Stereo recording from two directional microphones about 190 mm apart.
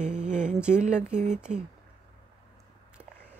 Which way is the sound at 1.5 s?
40° right (ahead or behind).